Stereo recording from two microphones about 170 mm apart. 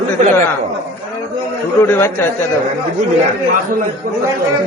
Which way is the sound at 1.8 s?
15° left (ahead or behind).